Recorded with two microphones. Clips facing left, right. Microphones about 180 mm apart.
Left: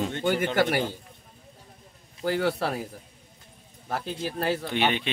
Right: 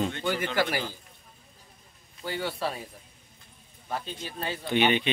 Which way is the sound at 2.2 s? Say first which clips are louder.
Left 6 dB; 70° left (ahead or behind).